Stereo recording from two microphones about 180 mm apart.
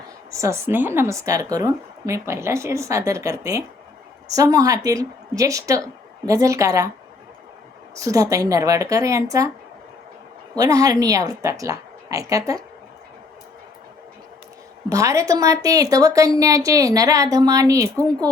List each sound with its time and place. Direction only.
0.3 s a woman's voice: 15° right (ahead or behind)
7.9 s a woman's voice: 20° right (ahead or behind)
10.5 s a woman's voice: 20° right (ahead or behind)
14.8 s a woman's voice: 20° right (ahead or behind)